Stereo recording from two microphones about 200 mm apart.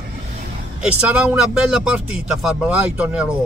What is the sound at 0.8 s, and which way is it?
Speech, 5° right (ahead or behind).